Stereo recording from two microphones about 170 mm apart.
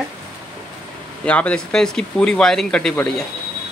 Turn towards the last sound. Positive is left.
turn(degrees=5)  # may be behind; listen again after turning